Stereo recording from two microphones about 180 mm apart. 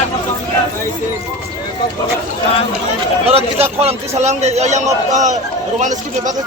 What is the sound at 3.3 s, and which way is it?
A man's voice, 35° right (ahead or behind).